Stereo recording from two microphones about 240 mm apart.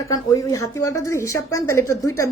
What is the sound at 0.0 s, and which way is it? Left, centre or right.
A woman's voice, centre.